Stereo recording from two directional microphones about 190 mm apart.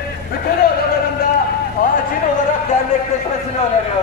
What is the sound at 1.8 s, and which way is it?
Speech, 50° left (ahead or behind).